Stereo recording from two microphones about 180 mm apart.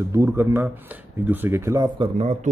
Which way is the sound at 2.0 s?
35° right (ahead or behind).